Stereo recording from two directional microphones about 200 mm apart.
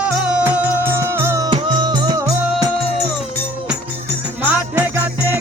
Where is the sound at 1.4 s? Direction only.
25° right (ahead or behind).